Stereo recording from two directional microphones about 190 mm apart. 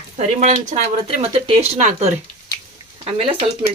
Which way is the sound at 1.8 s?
40° right (ahead or behind).